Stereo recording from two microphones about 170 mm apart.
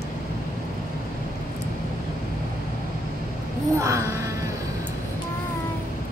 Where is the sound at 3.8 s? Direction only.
20° right (ahead or behind).